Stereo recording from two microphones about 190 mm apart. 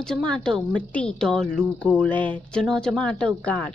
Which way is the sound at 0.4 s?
5° left (ahead or behind).